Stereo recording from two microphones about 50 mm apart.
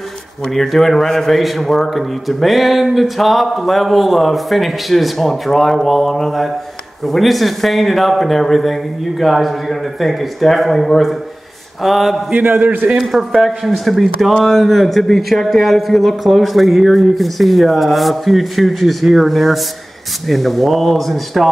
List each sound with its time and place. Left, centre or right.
0.6 s a man's voice: centre
12.4 s a man's voice: right
13.1 s a man's voice: centre